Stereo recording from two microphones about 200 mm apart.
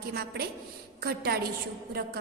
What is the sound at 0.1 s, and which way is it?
A woman's voice, 50° right (ahead or behind).